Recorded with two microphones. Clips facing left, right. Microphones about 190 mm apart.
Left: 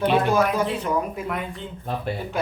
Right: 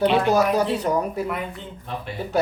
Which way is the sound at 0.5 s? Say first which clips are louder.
Right 2 dB; 35° right (ahead or behind).